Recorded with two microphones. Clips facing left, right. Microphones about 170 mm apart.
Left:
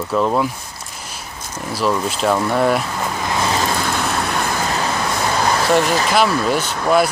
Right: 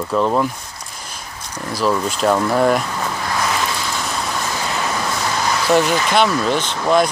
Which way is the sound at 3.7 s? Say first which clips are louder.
Left 4 dB; 60° left (ahead or behind).